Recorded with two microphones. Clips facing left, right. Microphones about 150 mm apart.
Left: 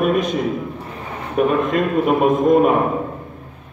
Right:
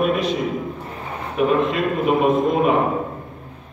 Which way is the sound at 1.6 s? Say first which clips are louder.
Left 3 dB; 45° left (ahead or behind).